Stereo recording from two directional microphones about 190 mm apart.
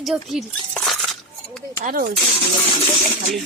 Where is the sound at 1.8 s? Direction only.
50° right (ahead or behind).